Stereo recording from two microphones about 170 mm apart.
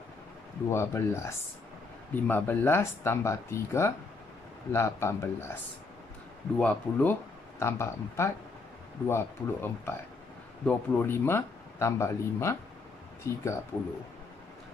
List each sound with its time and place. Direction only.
0.7 s speech: 15° left (ahead or behind)
6.6 s speech: 10° left (ahead or behind)